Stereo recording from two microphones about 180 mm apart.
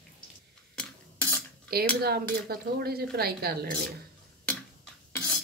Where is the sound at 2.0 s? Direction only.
60° right (ahead or behind).